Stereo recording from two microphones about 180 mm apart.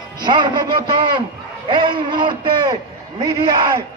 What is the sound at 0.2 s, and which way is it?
A man's voice, 25° right (ahead or behind).